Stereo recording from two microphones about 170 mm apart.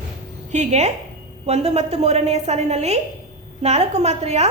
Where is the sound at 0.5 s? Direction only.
45° right (ahead or behind).